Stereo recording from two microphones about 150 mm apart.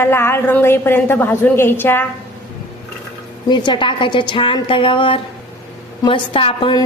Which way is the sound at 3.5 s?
30° left (ahead or behind).